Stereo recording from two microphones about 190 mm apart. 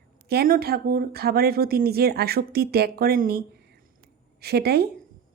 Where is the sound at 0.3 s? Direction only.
55° right (ahead or behind).